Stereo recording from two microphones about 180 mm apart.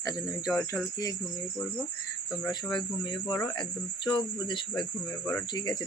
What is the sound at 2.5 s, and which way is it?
Speech, 25° left (ahead or behind).